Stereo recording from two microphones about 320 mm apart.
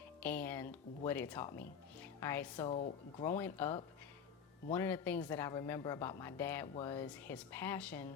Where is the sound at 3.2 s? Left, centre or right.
Centre.